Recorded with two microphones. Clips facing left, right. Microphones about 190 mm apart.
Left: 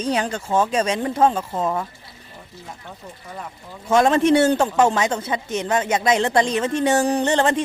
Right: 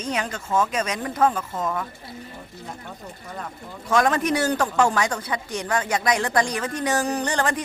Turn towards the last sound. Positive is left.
turn(degrees=25)  # may be behind; listen again after turning